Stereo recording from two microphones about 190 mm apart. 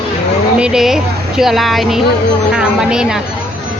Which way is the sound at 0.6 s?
5° right (ahead or behind).